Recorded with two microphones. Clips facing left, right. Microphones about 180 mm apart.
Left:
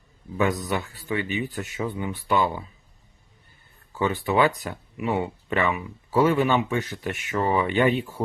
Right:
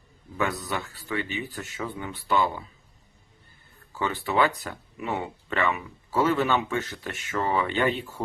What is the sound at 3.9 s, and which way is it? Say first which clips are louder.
Speech: left 3 dB; 15° left (ahead or behind).